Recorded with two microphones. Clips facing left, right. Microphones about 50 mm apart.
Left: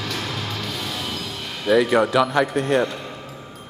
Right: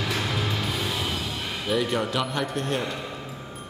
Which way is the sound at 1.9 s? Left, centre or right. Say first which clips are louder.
Left 9 dB; left.